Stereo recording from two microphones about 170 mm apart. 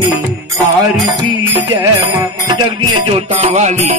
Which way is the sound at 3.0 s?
35° right (ahead or behind).